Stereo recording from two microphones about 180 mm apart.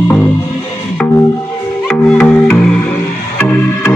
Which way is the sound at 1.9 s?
5° left (ahead or behind).